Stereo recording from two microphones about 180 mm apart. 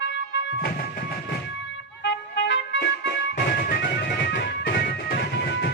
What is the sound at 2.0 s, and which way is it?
Music, 80° left.